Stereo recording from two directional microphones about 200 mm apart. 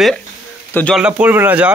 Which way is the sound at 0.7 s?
5° left (ahead or behind).